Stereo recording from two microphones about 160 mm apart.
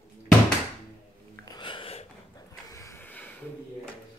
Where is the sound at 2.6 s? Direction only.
20° left (ahead or behind).